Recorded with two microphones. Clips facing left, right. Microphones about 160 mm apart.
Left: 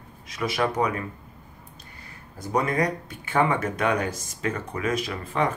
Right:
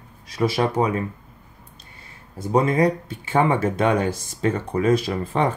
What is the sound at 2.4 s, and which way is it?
Speech, 25° right (ahead or behind).